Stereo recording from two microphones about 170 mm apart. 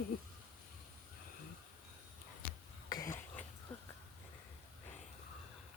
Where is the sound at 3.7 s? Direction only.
5° left (ahead or behind).